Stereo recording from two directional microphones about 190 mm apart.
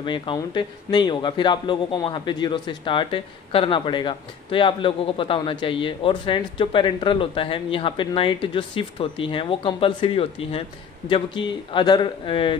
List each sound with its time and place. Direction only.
0.0 s a man's voice: 25° left (ahead or behind)